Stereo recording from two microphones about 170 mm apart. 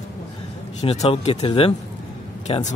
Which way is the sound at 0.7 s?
40° left (ahead or behind).